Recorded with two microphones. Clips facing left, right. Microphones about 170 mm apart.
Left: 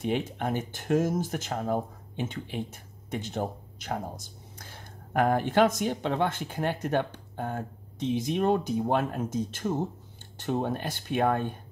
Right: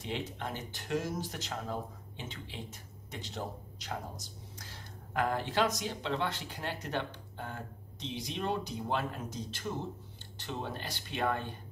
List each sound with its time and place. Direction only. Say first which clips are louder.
0.0 s speech: left 9 dB; 55° left (ahead or behind)